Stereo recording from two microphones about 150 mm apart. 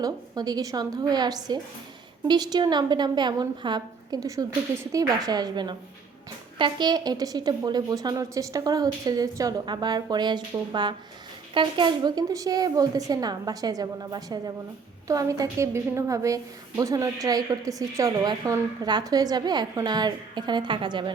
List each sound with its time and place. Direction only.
0.0 s a woman's voice: 25° right (ahead or behind)